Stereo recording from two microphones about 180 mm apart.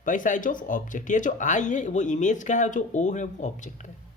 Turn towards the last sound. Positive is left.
turn(degrees=45)  # may be behind; listen again after turning